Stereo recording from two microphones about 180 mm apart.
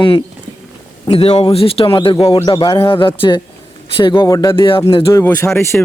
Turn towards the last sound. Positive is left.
turn(degrees=15)  # may be behind; listen again after turning